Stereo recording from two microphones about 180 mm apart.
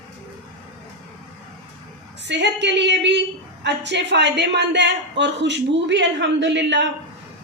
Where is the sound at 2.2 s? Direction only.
75° right (ahead or behind).